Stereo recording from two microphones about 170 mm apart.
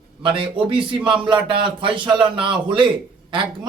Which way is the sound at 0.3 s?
30° right (ahead or behind).